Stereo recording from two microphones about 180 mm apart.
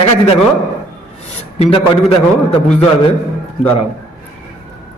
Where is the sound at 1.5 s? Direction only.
35° left (ahead or behind).